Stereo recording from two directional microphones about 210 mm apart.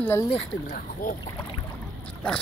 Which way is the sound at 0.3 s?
40° left (ahead or behind).